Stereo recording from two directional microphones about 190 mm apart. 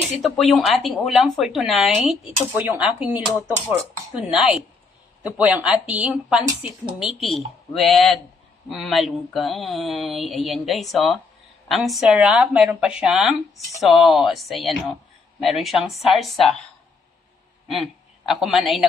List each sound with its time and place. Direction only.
0.2 s a woman's voice: centre (ahead or behind)
17.6 s a man's voice: centre (ahead or behind)